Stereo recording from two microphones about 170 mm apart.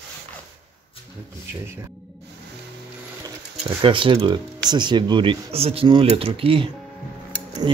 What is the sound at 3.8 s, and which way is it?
Speech, 30° right (ahead or behind).